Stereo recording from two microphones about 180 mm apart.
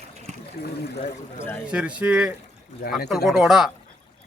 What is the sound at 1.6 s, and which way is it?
A man's voice, 5° right (ahead or behind).